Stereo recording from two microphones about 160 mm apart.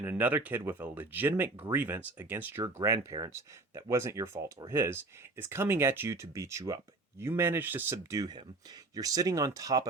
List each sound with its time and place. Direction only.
0.0 s speech: 10° right (ahead or behind)